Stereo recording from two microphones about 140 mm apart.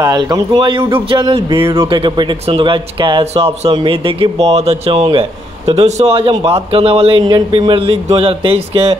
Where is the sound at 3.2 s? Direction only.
50° right (ahead or behind).